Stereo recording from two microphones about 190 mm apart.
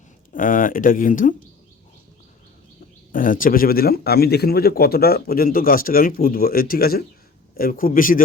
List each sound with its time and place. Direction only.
0.3 s speech: 45° left (ahead or behind)
3.1 s speech: 45° left (ahead or behind)